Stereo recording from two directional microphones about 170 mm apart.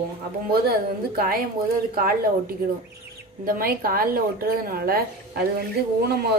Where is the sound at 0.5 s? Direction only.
65° right (ahead or behind).